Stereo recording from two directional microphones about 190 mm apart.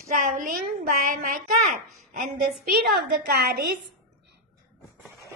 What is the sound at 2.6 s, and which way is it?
Speech, 55° right (ahead or behind).